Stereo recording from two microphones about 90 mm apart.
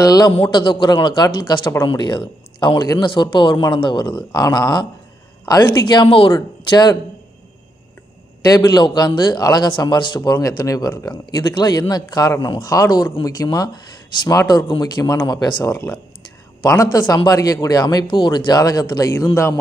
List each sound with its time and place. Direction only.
0.0 s speech: 45° left (ahead or behind)
0.5 s a man's voice: 60° left (ahead or behind)
6.0 s speech: 90° left
6.3 s speech: 45° left (ahead or behind)
8.5 s speech: 45° left (ahead or behind)
9.7 s speech: 60° left (ahead or behind)
10.3 s speech: 45° left (ahead or behind)
12.4 s speech: 55° left (ahead or behind)
12.7 s speech: 45° left (ahead or behind)
15.1 s speech: 55° left (ahead or behind)
16.7 s speech: 40° left (ahead or behind)
19.1 s speech: 30° left (ahead or behind)